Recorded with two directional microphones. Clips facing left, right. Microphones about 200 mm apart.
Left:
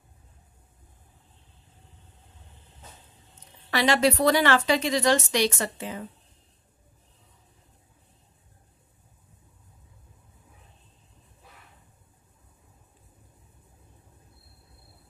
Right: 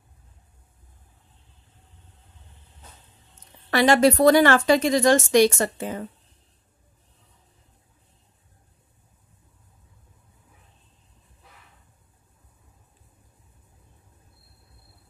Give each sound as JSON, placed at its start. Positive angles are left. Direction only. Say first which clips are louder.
{"t": 3.7, "sound": "a woman's voice", "louder": "right 5 dB", "side_deg": -50}